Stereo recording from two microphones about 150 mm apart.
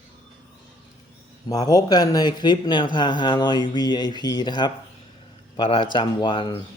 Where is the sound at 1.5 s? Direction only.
25° left (ahead or behind).